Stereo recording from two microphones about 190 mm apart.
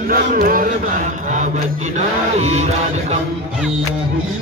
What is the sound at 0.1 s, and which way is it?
Mantra, 50° right (ahead or behind).